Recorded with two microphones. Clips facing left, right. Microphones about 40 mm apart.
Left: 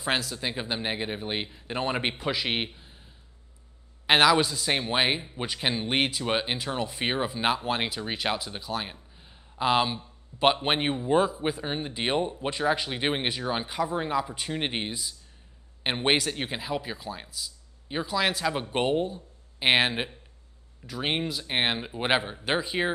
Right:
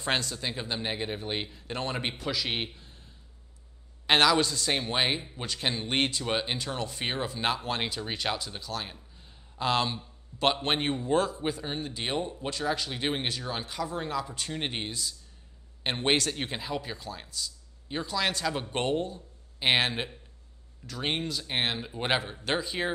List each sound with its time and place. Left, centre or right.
0.0 s speech: centre
0.4 s speech: centre
4.1 s a man's voice: centre